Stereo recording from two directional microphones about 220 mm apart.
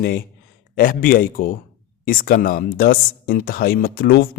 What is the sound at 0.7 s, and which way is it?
Speech, 40° left (ahead or behind).